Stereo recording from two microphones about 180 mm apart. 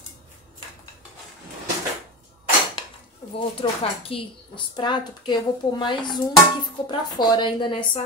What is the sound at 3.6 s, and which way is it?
A woman's voice, 30° left (ahead or behind).